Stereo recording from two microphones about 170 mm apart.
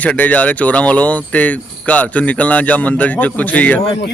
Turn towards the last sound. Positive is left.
turn(degrees=10)  # may be behind; listen again after turning